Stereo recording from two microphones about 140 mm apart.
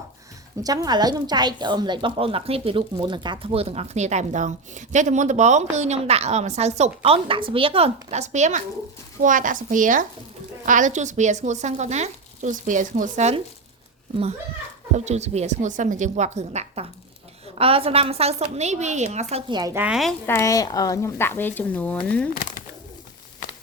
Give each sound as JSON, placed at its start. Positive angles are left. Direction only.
{"t": 0.6, "sound": "a woman's voice", "side_deg": -25}
{"t": 14.9, "sound": "a woman's voice", "side_deg": -55}
{"t": 19.5, "sound": "a woman's voice", "side_deg": -30}
{"t": 19.7, "sound": "a woman's voice", "side_deg": -10}
{"t": 20.2, "sound": "speech", "side_deg": 20}